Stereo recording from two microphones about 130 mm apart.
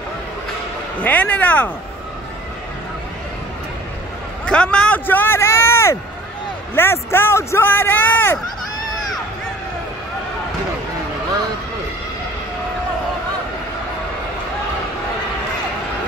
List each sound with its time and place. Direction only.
1.0 s speech: 10° left (ahead or behind)
4.5 s speech: 5° left (ahead or behind)